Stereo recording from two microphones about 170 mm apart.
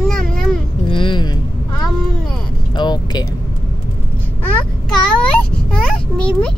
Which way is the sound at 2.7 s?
25° left (ahead or behind).